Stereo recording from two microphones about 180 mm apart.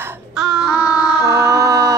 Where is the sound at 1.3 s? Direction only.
15° right (ahead or behind).